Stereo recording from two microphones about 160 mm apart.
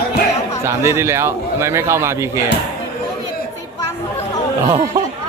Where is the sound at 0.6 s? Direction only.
15° right (ahead or behind).